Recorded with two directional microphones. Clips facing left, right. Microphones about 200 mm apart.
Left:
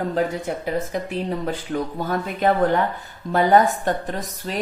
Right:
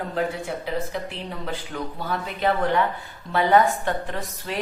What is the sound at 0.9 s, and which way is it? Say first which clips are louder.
Speech: left 6 dB; 45° left (ahead or behind).